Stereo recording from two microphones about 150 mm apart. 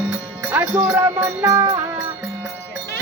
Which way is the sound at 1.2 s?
20° right (ahead or behind).